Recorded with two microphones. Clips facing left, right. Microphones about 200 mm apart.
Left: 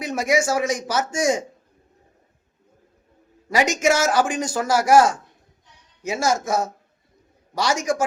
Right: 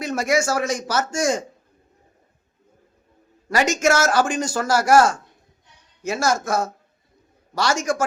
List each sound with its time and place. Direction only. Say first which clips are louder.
0.0 s a man's voice: even; 15° left (ahead or behind)
3.5 s a man's voice: even; 15° left (ahead or behind)